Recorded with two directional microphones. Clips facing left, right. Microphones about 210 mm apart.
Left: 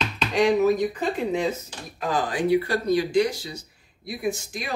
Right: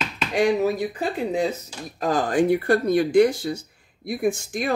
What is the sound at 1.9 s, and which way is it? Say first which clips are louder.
Speech: right 5 dB; 45° right (ahead or behind).